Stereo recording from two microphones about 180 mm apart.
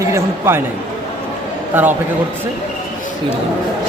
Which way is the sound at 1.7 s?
10° right (ahead or behind).